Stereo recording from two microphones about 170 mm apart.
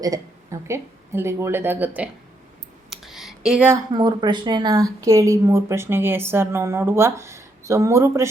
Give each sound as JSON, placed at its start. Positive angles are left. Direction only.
{"t": 0.0, "sound": "speech", "side_deg": -20}
{"t": 2.9, "sound": "a sound", "side_deg": 0}
{"t": 3.9, "sound": "speech", "side_deg": -25}